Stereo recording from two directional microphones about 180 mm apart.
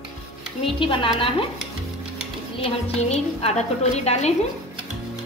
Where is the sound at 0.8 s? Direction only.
30° left (ahead or behind).